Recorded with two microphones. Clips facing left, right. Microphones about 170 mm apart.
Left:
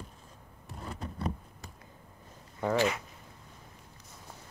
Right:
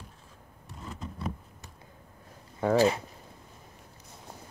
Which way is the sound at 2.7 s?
35° right (ahead or behind).